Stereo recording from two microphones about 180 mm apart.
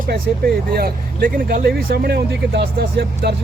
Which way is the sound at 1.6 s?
65° right (ahead or behind).